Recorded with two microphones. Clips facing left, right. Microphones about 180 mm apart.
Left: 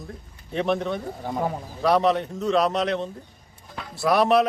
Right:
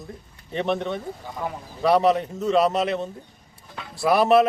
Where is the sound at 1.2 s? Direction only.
50° left (ahead or behind).